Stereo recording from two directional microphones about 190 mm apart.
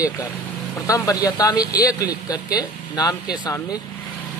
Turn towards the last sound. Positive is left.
turn(degrees=20)  # may be behind; listen again after turning